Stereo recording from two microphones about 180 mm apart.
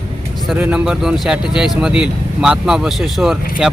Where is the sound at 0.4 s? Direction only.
5° right (ahead or behind).